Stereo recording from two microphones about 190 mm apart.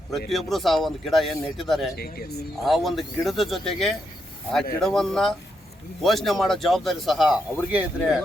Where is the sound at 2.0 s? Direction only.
55° left (ahead or behind).